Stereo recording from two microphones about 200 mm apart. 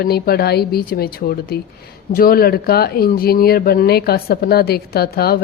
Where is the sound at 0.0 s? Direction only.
50° left (ahead or behind).